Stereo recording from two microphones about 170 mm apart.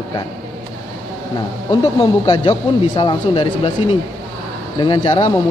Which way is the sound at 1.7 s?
30° left (ahead or behind).